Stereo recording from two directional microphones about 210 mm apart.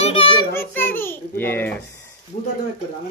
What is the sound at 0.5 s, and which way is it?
A child's voice, 10° left (ahead or behind).